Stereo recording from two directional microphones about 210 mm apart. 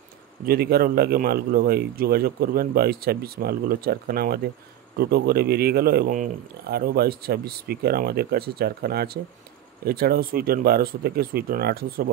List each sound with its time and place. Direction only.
0.5 s speech: 50° right (ahead or behind)